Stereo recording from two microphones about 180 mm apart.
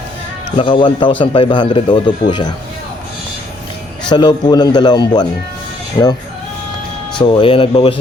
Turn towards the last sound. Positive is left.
turn(degrees=30)  # may be behind; listen again after turning